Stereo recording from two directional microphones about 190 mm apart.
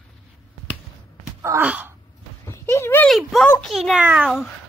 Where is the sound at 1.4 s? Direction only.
10° right (ahead or behind).